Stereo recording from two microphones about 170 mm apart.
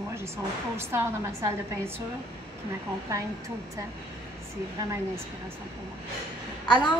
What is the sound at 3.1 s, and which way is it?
Speech, 20° right (ahead or behind).